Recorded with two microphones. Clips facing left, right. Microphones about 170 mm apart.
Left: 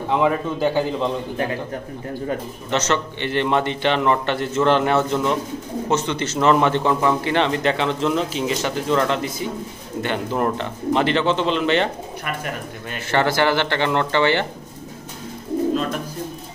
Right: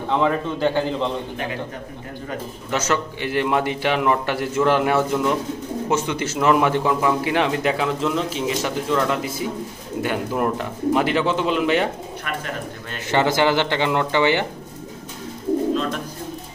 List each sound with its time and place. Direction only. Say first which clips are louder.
0.1 s a man's voice: left 1 dB; 15° left (ahead or behind)
2.7 s a man's voice: left 1 dB; 5° right (ahead or behind)
13.1 s a man's voice: right 1 dB; 15° right (ahead or behind)